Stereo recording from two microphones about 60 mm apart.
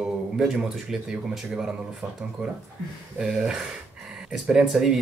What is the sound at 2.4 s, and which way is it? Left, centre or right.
Speech, right.